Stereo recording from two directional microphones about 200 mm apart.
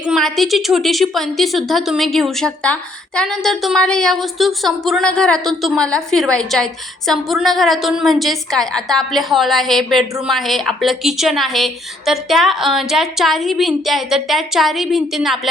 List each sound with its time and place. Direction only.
0.0 s a woman's voice: centre (ahead or behind)